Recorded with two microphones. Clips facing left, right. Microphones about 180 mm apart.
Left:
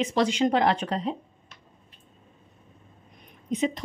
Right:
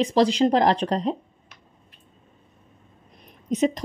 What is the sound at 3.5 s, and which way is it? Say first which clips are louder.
Speech: right 4 dB; 40° right (ahead or behind).